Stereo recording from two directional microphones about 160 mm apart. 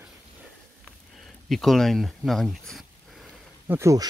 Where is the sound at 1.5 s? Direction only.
Centre (ahead or behind).